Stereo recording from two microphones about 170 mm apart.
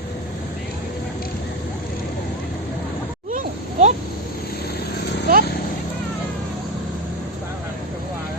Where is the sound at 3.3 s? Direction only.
45° right (ahead or behind).